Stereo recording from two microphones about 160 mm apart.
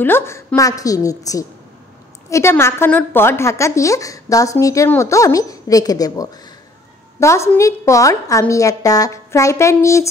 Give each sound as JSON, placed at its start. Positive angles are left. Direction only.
{"t": 0.0, "sound": "a woman's voice", "side_deg": 15}